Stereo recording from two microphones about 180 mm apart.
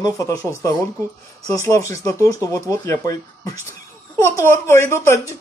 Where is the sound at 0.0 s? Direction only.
20° left (ahead or behind).